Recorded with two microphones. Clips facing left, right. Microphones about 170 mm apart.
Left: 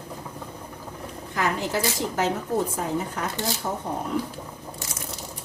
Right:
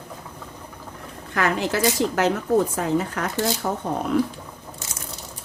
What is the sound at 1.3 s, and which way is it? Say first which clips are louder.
Speech: right 3 dB; 70° right (ahead or behind).